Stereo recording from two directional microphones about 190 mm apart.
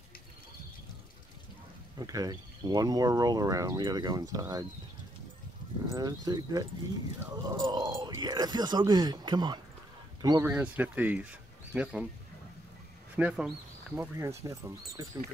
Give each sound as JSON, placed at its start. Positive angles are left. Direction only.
{"t": 2.0, "sound": "speech", "side_deg": -20}
{"t": 5.9, "sound": "speech", "side_deg": -20}
{"t": 10.5, "sound": "speech", "side_deg": -10}
{"t": 13.1, "sound": "speech", "side_deg": -5}